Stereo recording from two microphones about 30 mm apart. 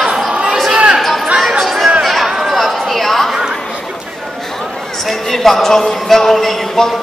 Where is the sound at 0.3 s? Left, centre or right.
Right.